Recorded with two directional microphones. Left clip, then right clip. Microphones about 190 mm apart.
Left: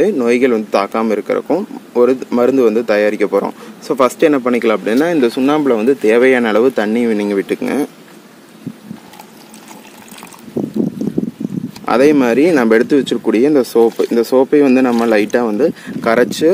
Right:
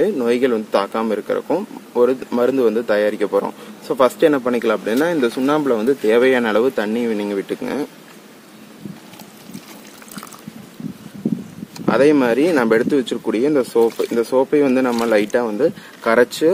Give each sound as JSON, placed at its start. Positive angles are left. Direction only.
{"t": 0.0, "sound": "speech", "side_deg": 30}
{"t": 11.8, "sound": "speech", "side_deg": 35}